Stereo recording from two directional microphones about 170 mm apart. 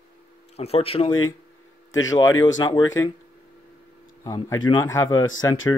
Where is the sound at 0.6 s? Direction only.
35° left (ahead or behind).